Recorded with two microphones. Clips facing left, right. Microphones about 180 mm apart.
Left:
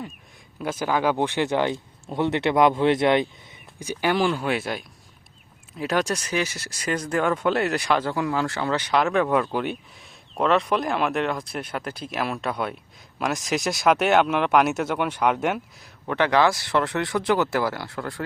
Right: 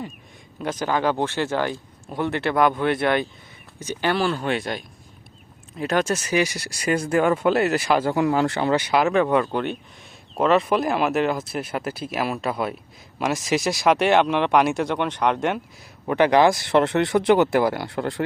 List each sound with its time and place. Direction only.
0.6 s a man's voice: 5° left (ahead or behind)
8.1 s speech: 25° right (ahead or behind); by 15.6 s 5° left (ahead or behind)
16.0 s speech: 15° right (ahead or behind)